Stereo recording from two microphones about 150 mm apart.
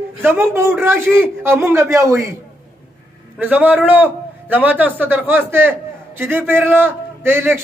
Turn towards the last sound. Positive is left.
turn(degrees=-15)  # may be behind; listen again after turning